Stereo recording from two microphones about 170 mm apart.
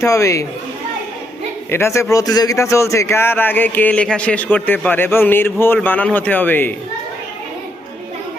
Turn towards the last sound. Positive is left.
turn(degrees=10)  # may be behind; listen again after turning